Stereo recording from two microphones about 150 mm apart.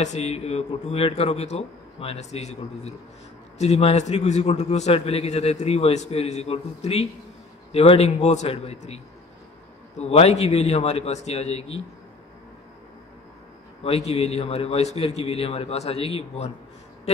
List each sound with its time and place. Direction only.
0.0 s a man's voice: 45° left (ahead or behind)
13.8 s a man's voice: 40° left (ahead or behind)